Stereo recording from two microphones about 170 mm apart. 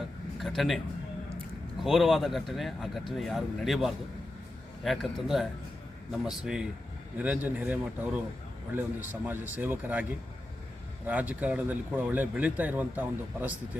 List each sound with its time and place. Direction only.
0.3 s a sound: centre (ahead or behind)
1.8 s speech: centre (ahead or behind)
9.2 s speech: 10° right (ahead or behind)